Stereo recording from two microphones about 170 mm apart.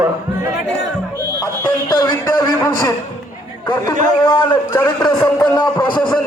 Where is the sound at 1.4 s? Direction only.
20° left (ahead or behind).